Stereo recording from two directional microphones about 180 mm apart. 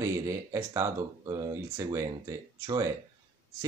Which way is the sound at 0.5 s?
20° right (ahead or behind).